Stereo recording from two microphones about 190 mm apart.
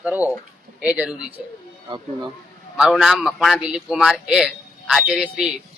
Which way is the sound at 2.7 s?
Centre (ahead or behind).